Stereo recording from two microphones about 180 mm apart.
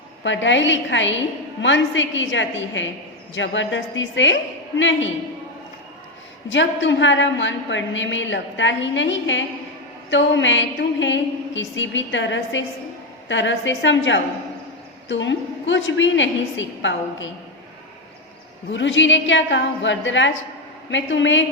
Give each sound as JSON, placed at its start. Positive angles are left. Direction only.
{"t": 0.2, "sound": "a woman's voice", "side_deg": 90}
{"t": 6.5, "sound": "a woman's voice", "side_deg": 90}
{"t": 18.7, "sound": "a woman's voice", "side_deg": 90}